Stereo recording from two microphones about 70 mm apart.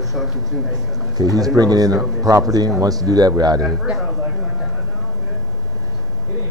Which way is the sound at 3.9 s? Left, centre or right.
Centre.